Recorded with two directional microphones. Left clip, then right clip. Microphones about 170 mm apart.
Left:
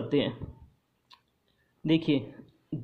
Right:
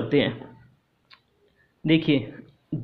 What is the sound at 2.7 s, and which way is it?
Music, 5° left (ahead or behind).